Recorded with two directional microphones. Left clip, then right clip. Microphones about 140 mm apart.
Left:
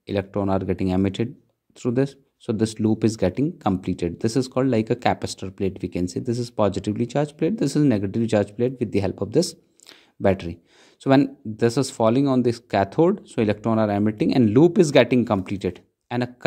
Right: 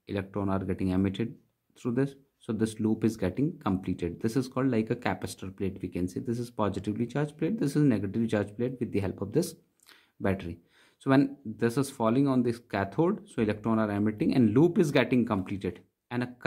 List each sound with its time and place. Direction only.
0.0 s speech: 35° left (ahead or behind)